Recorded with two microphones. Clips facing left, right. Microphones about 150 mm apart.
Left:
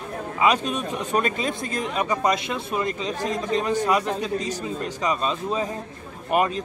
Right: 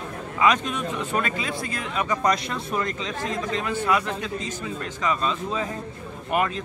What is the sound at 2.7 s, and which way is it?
Speech, 10° left (ahead or behind).